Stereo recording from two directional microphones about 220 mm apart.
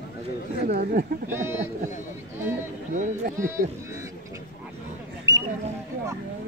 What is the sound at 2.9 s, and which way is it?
Speech, 35° right (ahead or behind).